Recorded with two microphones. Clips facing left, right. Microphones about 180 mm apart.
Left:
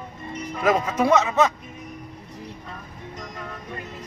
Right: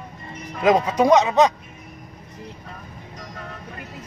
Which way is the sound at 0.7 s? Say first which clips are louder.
Right 4 dB; 15° right (ahead or behind).